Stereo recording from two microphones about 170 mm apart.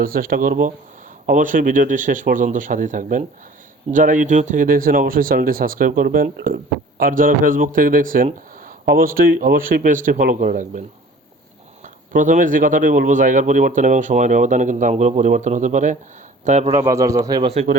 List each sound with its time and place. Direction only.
0.0 s speech: 55° right (ahead or behind)
12.1 s speech: 50° right (ahead or behind)
16.7 s speech: 20° right (ahead or behind)